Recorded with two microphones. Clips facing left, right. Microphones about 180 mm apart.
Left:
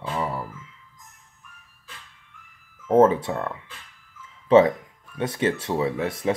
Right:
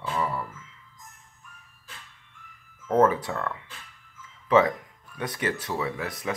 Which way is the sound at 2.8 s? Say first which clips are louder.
Left 4 dB; 25° left (ahead or behind).